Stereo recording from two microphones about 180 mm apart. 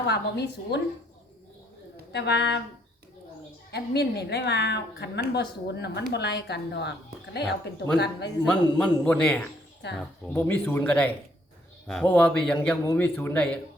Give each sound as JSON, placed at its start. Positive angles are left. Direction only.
{"t": 0.1, "sound": "a woman's voice", "side_deg": 70}
{"t": 2.1, "sound": "a woman's voice", "side_deg": 70}
{"t": 3.7, "sound": "a woman's voice", "side_deg": 65}
{"t": 7.9, "sound": "a man's voice", "side_deg": 65}
{"t": 8.4, "sound": "a man's voice", "side_deg": 5}
{"t": 9.8, "sound": "a woman's voice", "side_deg": 70}
{"t": 10.3, "sound": "a man's voice", "side_deg": 10}